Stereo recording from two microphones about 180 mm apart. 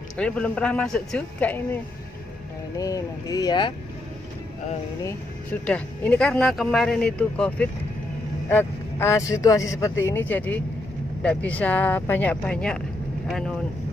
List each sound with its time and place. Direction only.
0.2 s speech: 5° left (ahead or behind)
2.8 s speech: 20° left (ahead or behind)
5.0 s speech: 10° left (ahead or behind)